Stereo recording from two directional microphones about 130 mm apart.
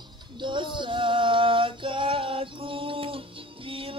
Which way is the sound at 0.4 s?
40° right (ahead or behind).